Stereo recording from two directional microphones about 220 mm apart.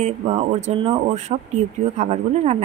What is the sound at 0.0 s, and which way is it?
A woman's voice, 30° right (ahead or behind).